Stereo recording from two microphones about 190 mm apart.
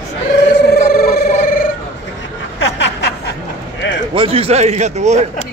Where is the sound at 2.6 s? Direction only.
65° left (ahead or behind).